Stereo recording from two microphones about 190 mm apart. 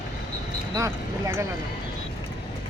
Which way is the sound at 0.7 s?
15° right (ahead or behind).